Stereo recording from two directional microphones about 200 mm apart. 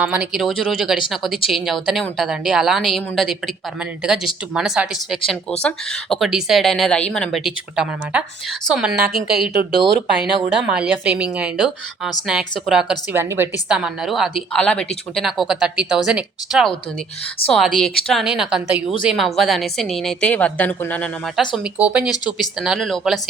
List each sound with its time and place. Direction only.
0.0 s speech: 5° right (ahead or behind)
9.1 s speech: 45° right (ahead or behind)
10.7 s speech: 5° right (ahead or behind)
21.5 s speech: 5° right (ahead or behind)